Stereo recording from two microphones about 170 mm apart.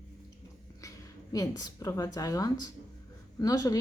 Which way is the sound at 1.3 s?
20° left (ahead or behind).